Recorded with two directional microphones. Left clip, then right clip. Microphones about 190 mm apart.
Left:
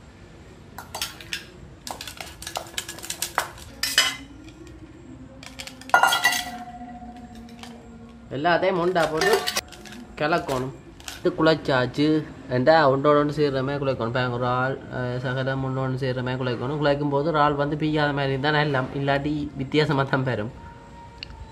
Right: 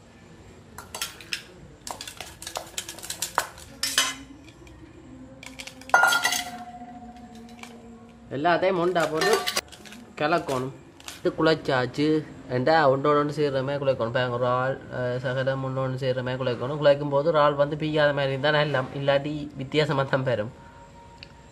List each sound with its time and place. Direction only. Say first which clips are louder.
1.9 s dishes: left 2 dB; centre (ahead or behind)
5.4 s chink: left 2 dB; 5° right (ahead or behind)
8.3 s speech: left 1 dB; 30° right (ahead or behind)
9.1 s dishes: left 2 dB; 5° right (ahead or behind)
10.1 s speech: left 1 dB; 30° right (ahead or behind)
11.2 s a man's voice: left 2 dB; centre (ahead or behind)